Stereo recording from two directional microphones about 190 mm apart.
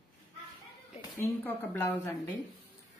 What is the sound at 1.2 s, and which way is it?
Speech, 10° left (ahead or behind).